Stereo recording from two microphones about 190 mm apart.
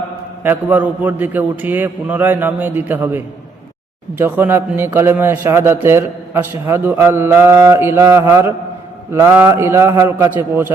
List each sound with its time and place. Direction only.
0.4 s a man's voice: 10° right (ahead or behind)